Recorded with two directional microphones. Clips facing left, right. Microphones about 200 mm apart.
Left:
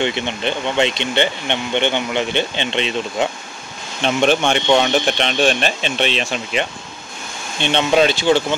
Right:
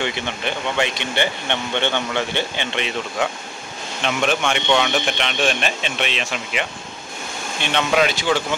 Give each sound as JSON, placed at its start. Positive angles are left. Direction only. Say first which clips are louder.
{"t": 0.0, "sound": "speech", "louder": "left 4 dB", "side_deg": 25}
{"t": 7.6, "sound": "speech", "louder": "left 4 dB", "side_deg": 30}